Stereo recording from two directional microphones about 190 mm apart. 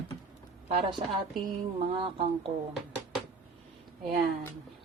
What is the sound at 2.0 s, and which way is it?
Speech, 30° right (ahead or behind).